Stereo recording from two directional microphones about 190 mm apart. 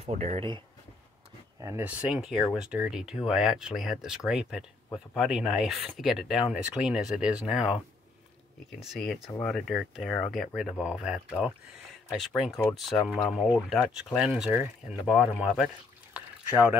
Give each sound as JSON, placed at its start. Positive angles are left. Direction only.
{"t": 0.0, "sound": "speech", "side_deg": -35}
{"t": 1.6, "sound": "speech", "side_deg": -10}